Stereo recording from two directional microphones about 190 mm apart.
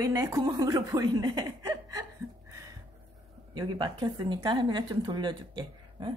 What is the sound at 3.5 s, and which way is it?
Speech, 25° right (ahead or behind).